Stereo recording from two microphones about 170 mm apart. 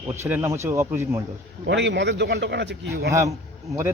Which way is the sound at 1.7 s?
90° right.